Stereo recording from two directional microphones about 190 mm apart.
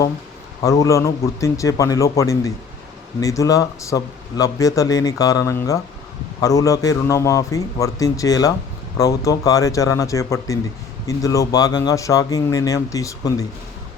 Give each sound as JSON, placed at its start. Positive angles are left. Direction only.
{"t": 0.6, "sound": "speech", "side_deg": 20}